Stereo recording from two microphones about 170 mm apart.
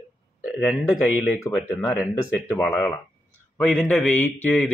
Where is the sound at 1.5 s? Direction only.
Centre (ahead or behind).